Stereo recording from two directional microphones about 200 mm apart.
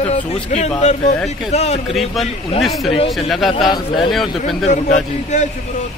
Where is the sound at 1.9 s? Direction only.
Centre (ahead or behind).